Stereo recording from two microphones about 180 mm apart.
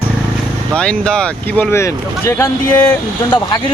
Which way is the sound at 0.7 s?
5° left (ahead or behind).